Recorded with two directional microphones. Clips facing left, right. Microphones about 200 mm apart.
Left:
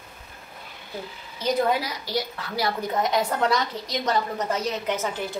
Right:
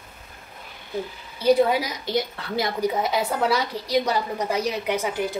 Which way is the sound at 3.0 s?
5° right (ahead or behind).